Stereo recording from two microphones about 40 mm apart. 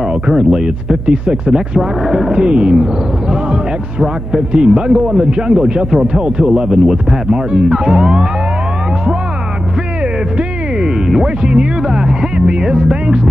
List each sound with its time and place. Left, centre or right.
0.4 s speech: centre
1.0 s speech: right
1.8 s speech: centre
4.0 s speech: centre
6.4 s speech: centre
7.5 s speech: centre
10.8 s music: centre
11.4 s speech: centre